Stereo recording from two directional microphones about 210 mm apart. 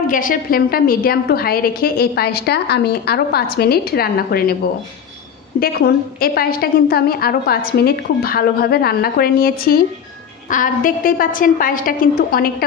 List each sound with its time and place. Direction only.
0.0 s a woman's voice: 40° left (ahead or behind)
5.6 s a woman's voice: 45° left (ahead or behind)